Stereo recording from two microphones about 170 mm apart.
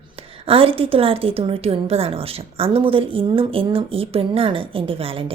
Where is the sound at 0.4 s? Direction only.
35° right (ahead or behind).